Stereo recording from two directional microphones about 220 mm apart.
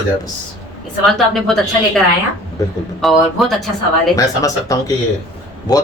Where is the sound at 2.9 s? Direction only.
Centre (ahead or behind).